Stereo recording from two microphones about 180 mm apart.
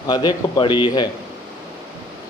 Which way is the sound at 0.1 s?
25° left (ahead or behind).